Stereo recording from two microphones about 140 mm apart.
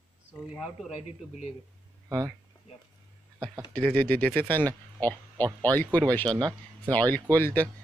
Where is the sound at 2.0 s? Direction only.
20° right (ahead or behind).